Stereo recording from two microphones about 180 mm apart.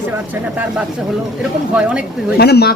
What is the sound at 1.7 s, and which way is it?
Speech, 5° right (ahead or behind).